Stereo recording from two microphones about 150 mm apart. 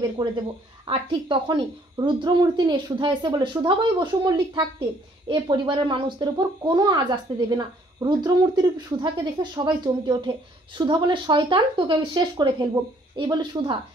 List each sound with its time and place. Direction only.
0.2 s speech: 25° right (ahead or behind)